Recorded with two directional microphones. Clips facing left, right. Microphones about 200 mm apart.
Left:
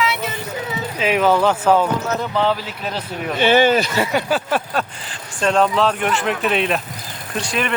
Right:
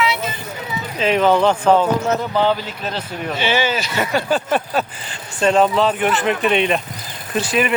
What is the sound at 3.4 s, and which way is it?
Speech, 50° left (ahead or behind).